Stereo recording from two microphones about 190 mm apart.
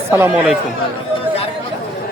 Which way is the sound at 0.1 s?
10° right (ahead or behind).